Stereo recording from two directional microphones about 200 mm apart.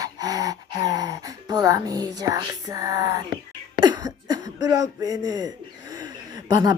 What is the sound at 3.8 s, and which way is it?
Cough, 20° right (ahead or behind).